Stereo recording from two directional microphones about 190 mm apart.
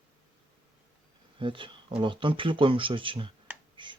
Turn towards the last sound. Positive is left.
turn(degrees=-25)  # may be behind; listen again after turning